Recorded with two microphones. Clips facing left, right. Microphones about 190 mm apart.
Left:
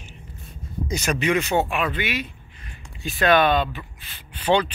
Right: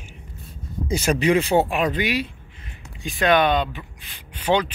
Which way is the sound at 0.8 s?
30° right (ahead or behind).